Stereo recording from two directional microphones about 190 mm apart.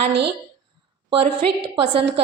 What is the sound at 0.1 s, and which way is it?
Speech, 60° right (ahead or behind).